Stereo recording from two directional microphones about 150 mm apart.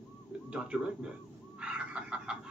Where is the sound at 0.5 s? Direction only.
5° right (ahead or behind).